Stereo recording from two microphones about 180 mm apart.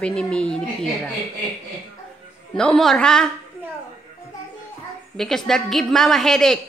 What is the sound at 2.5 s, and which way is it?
Speech, 5° left (ahead or behind).